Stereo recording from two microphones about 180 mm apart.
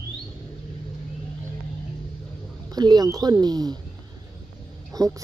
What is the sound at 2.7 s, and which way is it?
Speech, 20° right (ahead or behind).